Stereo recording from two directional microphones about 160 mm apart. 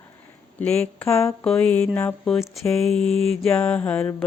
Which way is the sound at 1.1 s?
20° left (ahead or behind).